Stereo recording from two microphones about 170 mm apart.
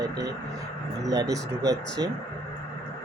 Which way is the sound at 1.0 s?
20° right (ahead or behind).